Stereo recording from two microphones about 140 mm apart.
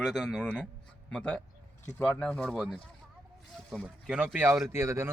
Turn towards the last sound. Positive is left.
turn(degrees=-20)  # may be behind; listen again after turning